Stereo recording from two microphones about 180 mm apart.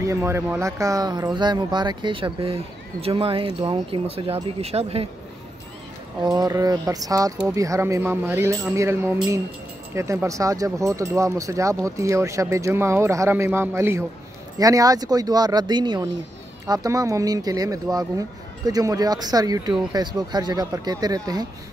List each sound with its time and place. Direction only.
0.0 s speech: 15° right (ahead or behind); by 5.0 s 35° right (ahead or behind)
6.2 s speech: 20° right (ahead or behind)